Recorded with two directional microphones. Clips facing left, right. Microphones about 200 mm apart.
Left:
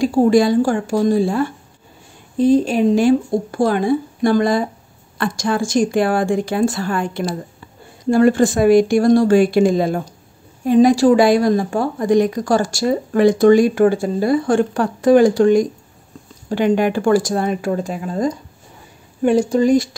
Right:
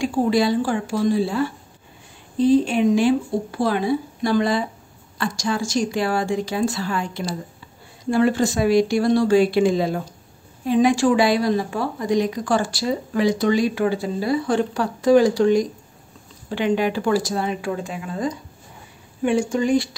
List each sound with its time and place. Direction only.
0.0 s a woman's voice: 40° left (ahead or behind)